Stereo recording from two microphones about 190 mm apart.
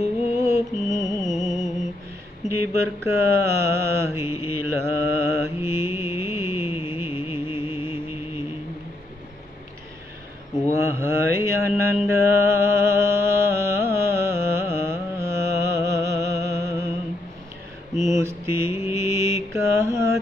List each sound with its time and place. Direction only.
0.0 s music: 15° right (ahead or behind)
2.4 s mantra: 15° right (ahead or behind)
4.6 s music: 15° right (ahead or behind)
10.8 s mantra: 15° right (ahead or behind)
17.9 s mantra: 15° right (ahead or behind)